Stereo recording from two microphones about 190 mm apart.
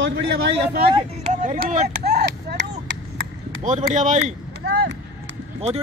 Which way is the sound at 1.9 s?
60° right (ahead or behind).